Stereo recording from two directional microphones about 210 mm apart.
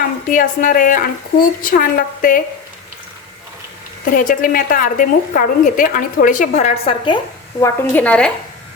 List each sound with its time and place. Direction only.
0.3 s a woman's voice: 40° left (ahead or behind)
4.1 s a woman's voice: 40° left (ahead or behind); by 7.2 s 25° left (ahead or behind)
7.6 s a woman's voice: 5° left (ahead or behind)